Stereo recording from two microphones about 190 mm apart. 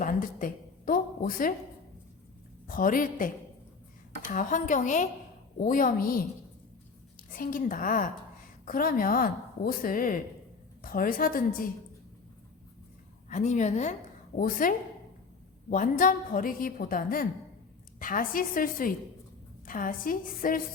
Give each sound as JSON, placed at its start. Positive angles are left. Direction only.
{"t": 0.0, "sound": "a sound", "side_deg": 45}
{"t": 2.6, "sound": "a woman's voice", "side_deg": 45}
{"t": 7.3, "sound": "a woman's voice", "side_deg": 45}
{"t": 13.3, "sound": "a woman's voice", "side_deg": 40}